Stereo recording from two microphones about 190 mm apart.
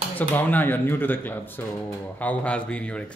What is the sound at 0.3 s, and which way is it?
Speech, 10° left (ahead or behind).